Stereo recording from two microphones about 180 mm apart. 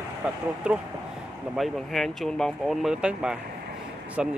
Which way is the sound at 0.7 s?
5° right (ahead or behind).